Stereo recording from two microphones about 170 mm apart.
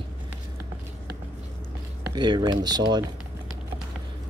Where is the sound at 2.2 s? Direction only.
25° right (ahead or behind).